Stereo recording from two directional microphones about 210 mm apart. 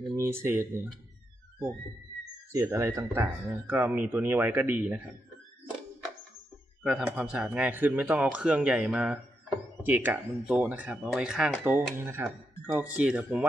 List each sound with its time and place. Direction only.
0.1 s speech: 15° right (ahead or behind)
2.5 s speech: 10° right (ahead or behind)
6.8 s speech: 5° right (ahead or behind)